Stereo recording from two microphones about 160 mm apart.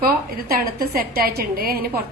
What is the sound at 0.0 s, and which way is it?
A woman's voice, 65° right (ahead or behind).